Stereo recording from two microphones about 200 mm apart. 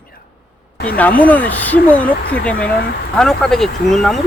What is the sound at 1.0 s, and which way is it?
Speech, 10° left (ahead or behind).